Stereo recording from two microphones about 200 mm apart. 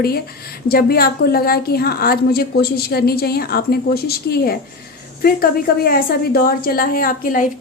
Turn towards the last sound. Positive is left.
turn(degrees=45)  # may be behind; listen again after turning